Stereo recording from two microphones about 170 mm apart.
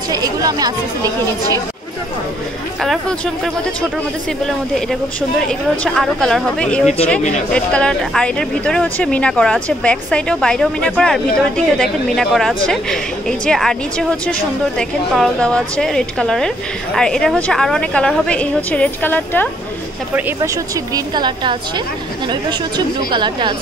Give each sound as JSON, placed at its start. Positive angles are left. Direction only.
{"t": 0.1, "sound": "a woman's voice", "side_deg": -20}
{"t": 2.8, "sound": "speech", "side_deg": 5}
{"t": 5.9, "sound": "speech", "side_deg": 0}
{"t": 20.2, "sound": "a woman's voice", "side_deg": -15}